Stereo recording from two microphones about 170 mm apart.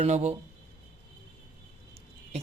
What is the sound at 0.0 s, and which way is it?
Speech, 40° right (ahead or behind).